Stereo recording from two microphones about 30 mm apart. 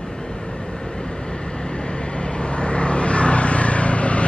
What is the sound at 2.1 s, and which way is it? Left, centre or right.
Vehicle, left.